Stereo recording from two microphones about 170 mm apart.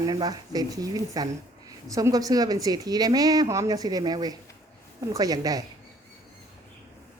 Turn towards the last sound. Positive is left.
turn(degrees=-20)  # may be behind; listen again after turning